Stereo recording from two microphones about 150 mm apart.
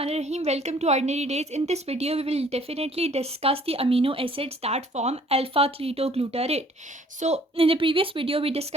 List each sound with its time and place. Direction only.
0.0 s a woman's voice: 45° right (ahead or behind)